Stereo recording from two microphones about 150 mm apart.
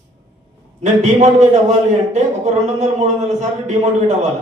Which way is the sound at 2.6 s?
50° right (ahead or behind).